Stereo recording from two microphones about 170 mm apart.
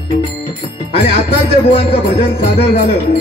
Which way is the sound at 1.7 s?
35° left (ahead or behind).